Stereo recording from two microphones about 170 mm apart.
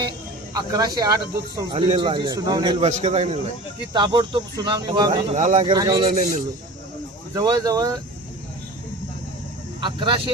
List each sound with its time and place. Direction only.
0.5 s speech: 20° right (ahead or behind)
2.8 s a man's voice: 40° right (ahead or behind)
3.9 s speech: 30° right (ahead or behind)
5.3 s speech: 45° right (ahead or behind)
5.6 s speech: 20° right (ahead or behind)
6.1 s speech: 45° right (ahead or behind)
7.3 s speech: 20° right (ahead or behind)
9.8 s speech: 30° right (ahead or behind)